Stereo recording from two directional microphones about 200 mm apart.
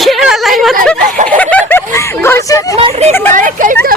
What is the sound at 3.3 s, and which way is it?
Speech, 40° right (ahead or behind).